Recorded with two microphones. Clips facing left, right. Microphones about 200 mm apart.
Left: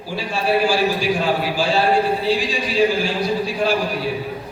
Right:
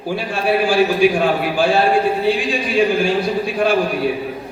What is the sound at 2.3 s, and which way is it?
A man's voice, 55° right (ahead or behind).